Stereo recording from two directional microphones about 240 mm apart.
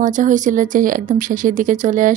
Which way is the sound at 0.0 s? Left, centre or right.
Right.